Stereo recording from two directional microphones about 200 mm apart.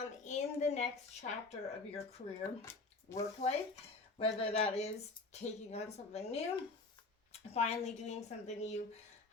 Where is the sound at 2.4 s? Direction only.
15° left (ahead or behind).